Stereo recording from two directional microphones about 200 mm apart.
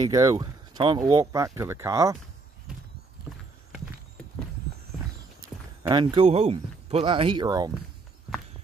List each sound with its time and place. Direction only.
0.0 s speech: 15° right (ahead or behind)
5.9 s speech: 25° right (ahead or behind)